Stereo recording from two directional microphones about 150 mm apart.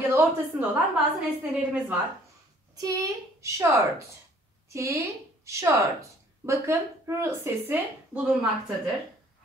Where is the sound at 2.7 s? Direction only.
25° right (ahead or behind).